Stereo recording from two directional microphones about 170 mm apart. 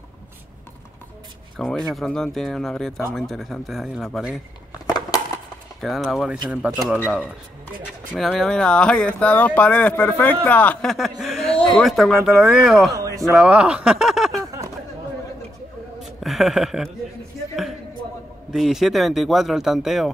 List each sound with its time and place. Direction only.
1.6 s speech: centre (ahead or behind)
4.8 s crushing: 25° left (ahead or behind)
5.8 s speech: centre (ahead or behind)
8.2 s speech: 5° left (ahead or behind)
12.9 s a sound: 20° right (ahead or behind)
13.2 s speech: centre (ahead or behind)
16.0 s a sound: centre (ahead or behind)
18.5 s speech: centre (ahead or behind)